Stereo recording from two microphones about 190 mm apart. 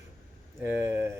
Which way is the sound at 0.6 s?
15° right (ahead or behind).